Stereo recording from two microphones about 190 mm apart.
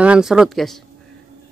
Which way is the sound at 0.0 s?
5° right (ahead or behind).